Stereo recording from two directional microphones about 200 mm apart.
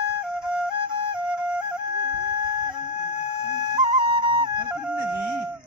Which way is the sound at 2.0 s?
20° right (ahead or behind).